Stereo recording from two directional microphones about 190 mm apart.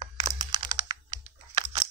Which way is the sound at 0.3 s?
20° right (ahead or behind).